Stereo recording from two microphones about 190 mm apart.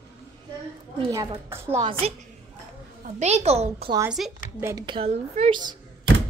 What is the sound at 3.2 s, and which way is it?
Speech, 35° right (ahead or behind).